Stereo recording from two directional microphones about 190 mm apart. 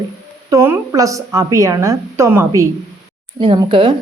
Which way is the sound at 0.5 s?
15° right (ahead or behind).